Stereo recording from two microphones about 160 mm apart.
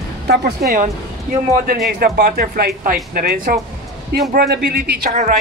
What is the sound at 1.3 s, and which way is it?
Speech, 55° right (ahead or behind).